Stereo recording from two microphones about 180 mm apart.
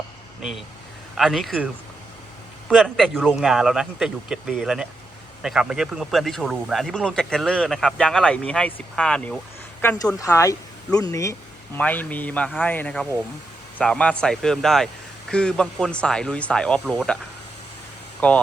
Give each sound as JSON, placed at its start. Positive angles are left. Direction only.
{"t": 1.1, "sound": "speech", "side_deg": 0}
{"t": 10.2, "sound": "speech", "side_deg": 20}
{"t": 18.2, "sound": "speech", "side_deg": 5}